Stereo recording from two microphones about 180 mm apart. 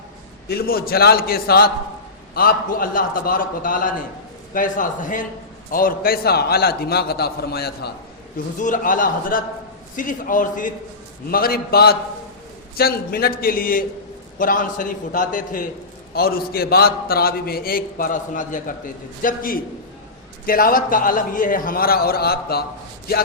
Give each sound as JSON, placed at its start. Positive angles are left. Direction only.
{"t": 0.4, "sound": "a man's voice", "side_deg": 60}
{"t": 8.5, "sound": "a man's voice", "side_deg": 45}